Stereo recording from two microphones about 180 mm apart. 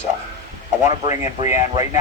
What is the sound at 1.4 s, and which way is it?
Speech, 20° right (ahead or behind).